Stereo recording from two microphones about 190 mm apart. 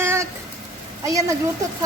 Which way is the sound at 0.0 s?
15° right (ahead or behind).